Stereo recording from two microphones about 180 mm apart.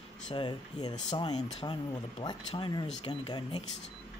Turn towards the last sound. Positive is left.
turn(degrees=25)  # may be behind; listen again after turning